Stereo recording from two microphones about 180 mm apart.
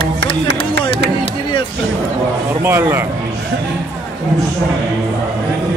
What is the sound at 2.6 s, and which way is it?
Speech, 15° right (ahead or behind).